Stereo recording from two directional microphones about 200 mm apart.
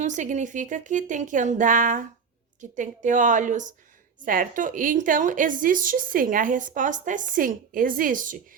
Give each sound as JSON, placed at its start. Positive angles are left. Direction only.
{"t": 0.0, "sound": "a woman's voice", "side_deg": -40}